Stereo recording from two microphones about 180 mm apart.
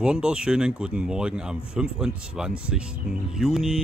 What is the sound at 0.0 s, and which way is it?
Speech, 5° right (ahead or behind).